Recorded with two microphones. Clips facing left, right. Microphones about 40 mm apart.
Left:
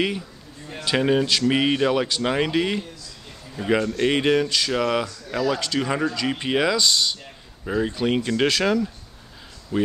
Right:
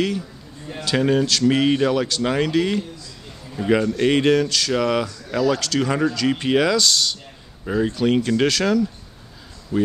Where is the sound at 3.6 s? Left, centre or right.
Centre.